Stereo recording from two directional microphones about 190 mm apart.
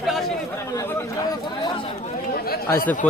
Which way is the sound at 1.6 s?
25° left (ahead or behind).